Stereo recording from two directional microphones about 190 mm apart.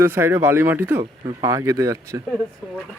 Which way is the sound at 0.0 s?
10° right (ahead or behind).